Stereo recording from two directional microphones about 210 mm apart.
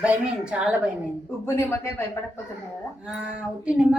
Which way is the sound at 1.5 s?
10° left (ahead or behind).